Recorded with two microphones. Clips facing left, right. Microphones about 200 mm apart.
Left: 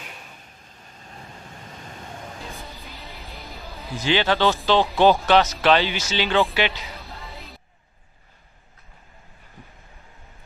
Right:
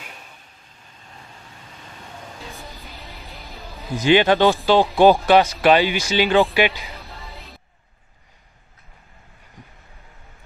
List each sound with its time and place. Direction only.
2.8 s music: centre (ahead or behind)
3.9 s speech: 15° right (ahead or behind)
7.0 s music: centre (ahead or behind)